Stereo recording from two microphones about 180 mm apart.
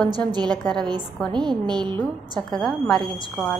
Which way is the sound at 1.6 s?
25° right (ahead or behind).